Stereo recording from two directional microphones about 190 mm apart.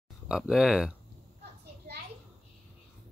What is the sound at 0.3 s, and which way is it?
Speech, 5° right (ahead or behind).